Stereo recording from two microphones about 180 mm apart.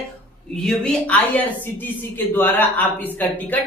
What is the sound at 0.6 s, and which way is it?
Speech, 5° left (ahead or behind).